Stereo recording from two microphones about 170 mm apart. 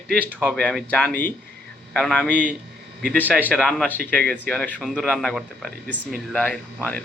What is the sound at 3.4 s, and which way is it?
Speech, 5° left (ahead or behind).